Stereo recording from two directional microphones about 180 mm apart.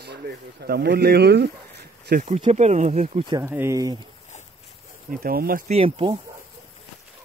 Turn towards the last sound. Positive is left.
turn(degrees=-30)  # may be behind; listen again after turning